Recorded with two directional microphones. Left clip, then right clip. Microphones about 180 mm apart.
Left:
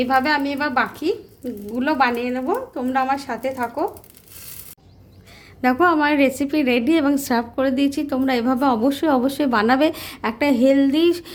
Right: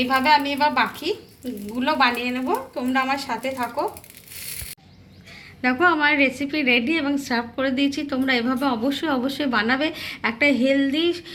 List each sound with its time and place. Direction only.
0.0 s a woman's voice: 60° left (ahead or behind)
5.8 s a woman's voice: 50° left (ahead or behind)